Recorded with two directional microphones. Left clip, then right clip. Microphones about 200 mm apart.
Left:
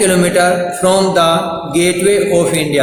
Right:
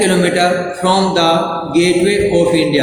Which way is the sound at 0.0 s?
50° left (ahead or behind).